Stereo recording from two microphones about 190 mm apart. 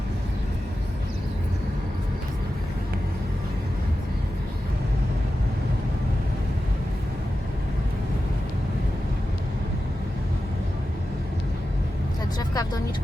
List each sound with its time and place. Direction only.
12.4 s vehicle: 20° left (ahead or behind)